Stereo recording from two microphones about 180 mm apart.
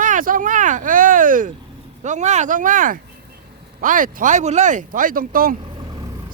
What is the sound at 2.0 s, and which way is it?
Speech, 40° right (ahead or behind).